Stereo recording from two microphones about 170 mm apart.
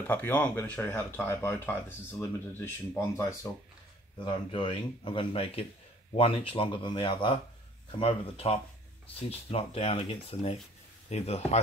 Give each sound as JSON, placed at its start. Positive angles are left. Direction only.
{"t": 0.0, "sound": "speech", "side_deg": 10}
{"t": 4.2, "sound": "speech", "side_deg": 30}